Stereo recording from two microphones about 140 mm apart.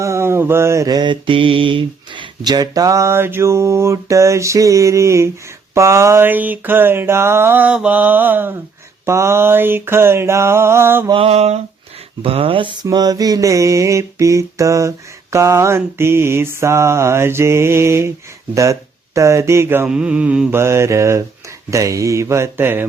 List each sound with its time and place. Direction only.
0.0 s mantra: 20° right (ahead or behind)
5.7 s a sound: 20° right (ahead or behind)
11.1 s mantra: 45° right (ahead or behind)
12.2 s speech: 40° right (ahead or behind)
12.8 s mantra: 30° right (ahead or behind)
18.5 s speech: 20° right (ahead or behind)
19.9 s a sound: 10° right (ahead or behind)
21.7 s mantra: 25° right (ahead or behind)